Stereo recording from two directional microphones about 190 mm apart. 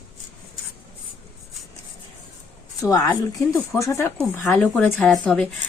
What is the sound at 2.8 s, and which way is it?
Speech, 20° left (ahead or behind).